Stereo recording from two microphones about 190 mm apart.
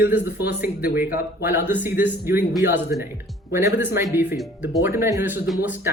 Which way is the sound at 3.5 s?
15° right (ahead or behind).